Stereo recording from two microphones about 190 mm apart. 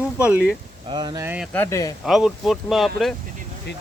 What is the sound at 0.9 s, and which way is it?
Speech, 25° right (ahead or behind).